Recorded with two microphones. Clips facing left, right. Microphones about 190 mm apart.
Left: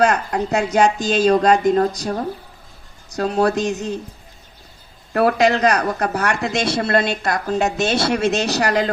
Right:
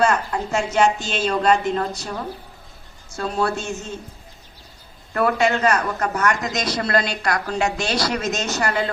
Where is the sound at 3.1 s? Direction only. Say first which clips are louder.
Left 5 dB; 40° left (ahead or behind).